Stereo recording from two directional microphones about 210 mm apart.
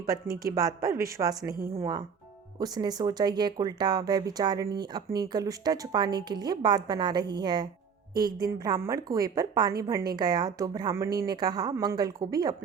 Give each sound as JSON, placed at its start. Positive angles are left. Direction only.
{"t": 0.5, "sound": "a woman's voice", "side_deg": -15}